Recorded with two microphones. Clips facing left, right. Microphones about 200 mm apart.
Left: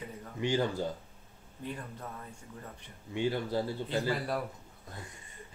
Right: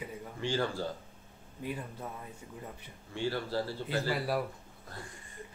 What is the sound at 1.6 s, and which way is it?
Speech, 10° right (ahead or behind).